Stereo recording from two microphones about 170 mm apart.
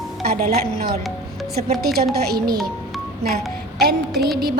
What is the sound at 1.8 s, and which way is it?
Speech, 65° right (ahead or behind).